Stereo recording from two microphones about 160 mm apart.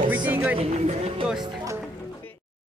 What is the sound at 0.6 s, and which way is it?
Speech, 40° right (ahead or behind).